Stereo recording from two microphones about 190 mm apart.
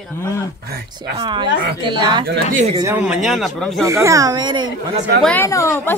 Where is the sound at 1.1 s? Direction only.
25° right (ahead or behind).